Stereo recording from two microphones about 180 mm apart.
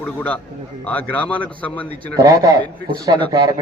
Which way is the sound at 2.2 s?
20° right (ahead or behind).